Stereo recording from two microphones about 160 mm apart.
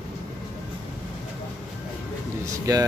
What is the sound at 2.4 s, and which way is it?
Speech, 20° right (ahead or behind).